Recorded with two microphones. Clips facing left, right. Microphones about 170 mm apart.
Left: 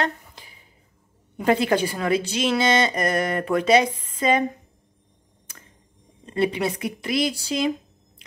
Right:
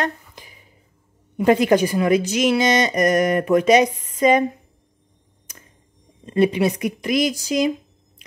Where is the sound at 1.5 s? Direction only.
15° right (ahead or behind).